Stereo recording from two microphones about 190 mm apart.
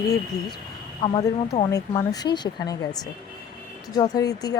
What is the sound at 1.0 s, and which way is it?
Speech, 25° left (ahead or behind).